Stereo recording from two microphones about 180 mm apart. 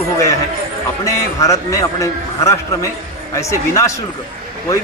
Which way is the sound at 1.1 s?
15° left (ahead or behind).